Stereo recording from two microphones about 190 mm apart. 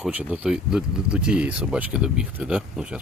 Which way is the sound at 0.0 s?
5° right (ahead or behind).